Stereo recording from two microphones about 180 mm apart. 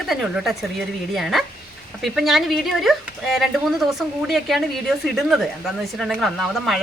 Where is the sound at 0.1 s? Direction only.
Centre (ahead or behind).